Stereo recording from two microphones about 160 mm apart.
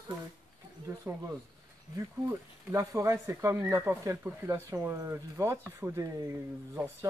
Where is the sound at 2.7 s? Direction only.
20° right (ahead or behind).